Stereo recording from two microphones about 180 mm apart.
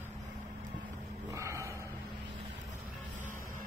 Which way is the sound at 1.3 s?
15° right (ahead or behind).